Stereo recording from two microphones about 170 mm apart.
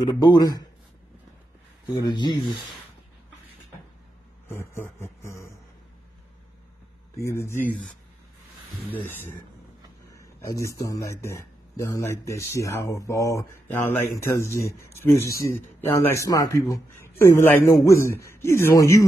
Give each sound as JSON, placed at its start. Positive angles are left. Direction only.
{"t": 0.0, "sound": "speech", "side_deg": 25}
{"t": 1.9, "sound": "speech", "side_deg": 25}
{"t": 4.6, "sound": "speech", "side_deg": 15}
{"t": 7.2, "sound": "speech", "side_deg": 15}
{"t": 9.0, "sound": "speech", "side_deg": 10}